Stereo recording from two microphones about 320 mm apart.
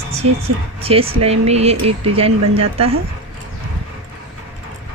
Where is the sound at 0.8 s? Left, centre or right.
Centre.